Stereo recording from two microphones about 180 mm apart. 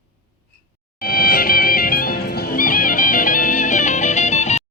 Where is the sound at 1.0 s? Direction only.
55° left (ahead or behind); by 4.6 s 40° left (ahead or behind).